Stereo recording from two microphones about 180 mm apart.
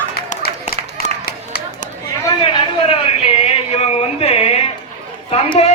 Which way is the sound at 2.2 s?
30° left (ahead or behind).